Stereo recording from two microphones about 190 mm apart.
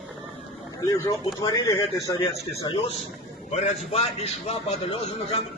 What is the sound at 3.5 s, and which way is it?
A man's voice, 35° left (ahead or behind).